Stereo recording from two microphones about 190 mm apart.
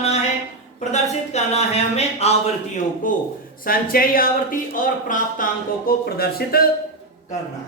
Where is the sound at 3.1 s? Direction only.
45° left (ahead or behind).